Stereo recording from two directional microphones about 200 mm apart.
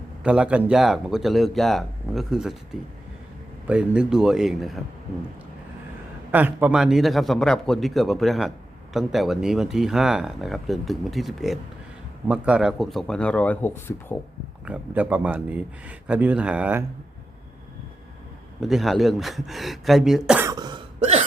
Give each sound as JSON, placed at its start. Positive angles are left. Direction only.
{"t": 0.2, "sound": "a man's voice", "side_deg": -5}
{"t": 3.7, "sound": "a man's voice", "side_deg": -5}
{"t": 6.3, "sound": "a man's voice", "side_deg": -10}
{"t": 14.6, "sound": "speech", "side_deg": -5}
{"t": 18.6, "sound": "a man's voice", "side_deg": 0}
{"t": 20.5, "sound": "cough", "side_deg": -20}